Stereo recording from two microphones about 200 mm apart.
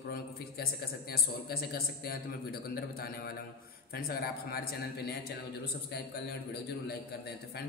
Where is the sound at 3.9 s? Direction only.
50° left (ahead or behind).